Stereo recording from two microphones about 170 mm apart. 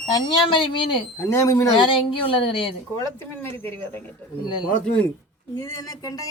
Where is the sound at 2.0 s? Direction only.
30° left (ahead or behind).